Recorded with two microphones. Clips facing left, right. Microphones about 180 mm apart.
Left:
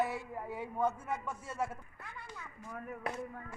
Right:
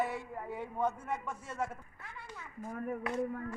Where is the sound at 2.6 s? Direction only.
45° right (ahead or behind).